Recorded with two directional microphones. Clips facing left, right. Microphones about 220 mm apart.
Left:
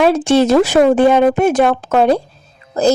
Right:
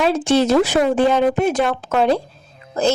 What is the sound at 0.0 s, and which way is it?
A woman's voice, 55° left (ahead or behind).